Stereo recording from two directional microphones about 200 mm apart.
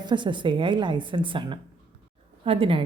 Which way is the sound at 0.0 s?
25° right (ahead or behind).